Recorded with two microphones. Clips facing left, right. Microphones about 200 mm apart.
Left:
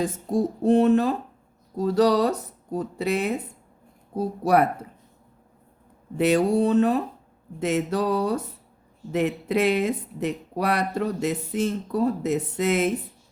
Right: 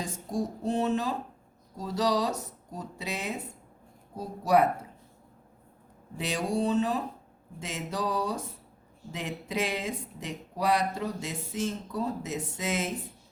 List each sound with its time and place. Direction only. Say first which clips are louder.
0.0 s speech: left 8 dB; 55° left (ahead or behind)
6.1 s speech: left 10 dB; 60° left (ahead or behind)